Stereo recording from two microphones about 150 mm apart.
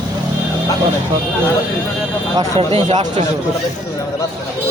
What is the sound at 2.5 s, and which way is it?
Speech, 40° right (ahead or behind).